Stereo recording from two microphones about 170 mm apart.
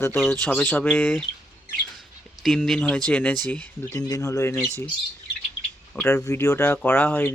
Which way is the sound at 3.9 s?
20° left (ahead or behind).